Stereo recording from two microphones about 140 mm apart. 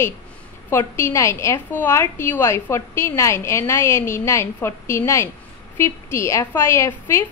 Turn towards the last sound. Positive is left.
turn(degrees=20)  # may be behind; listen again after turning